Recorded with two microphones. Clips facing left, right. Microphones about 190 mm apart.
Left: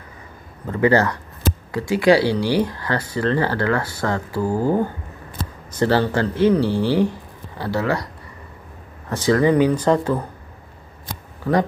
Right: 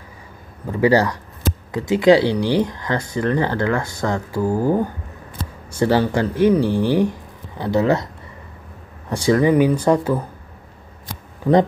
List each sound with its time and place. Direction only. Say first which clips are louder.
0.7 s speech: right 1 dB; 10° right (ahead or behind)
9.1 s speech: right 1 dB; 15° right (ahead or behind)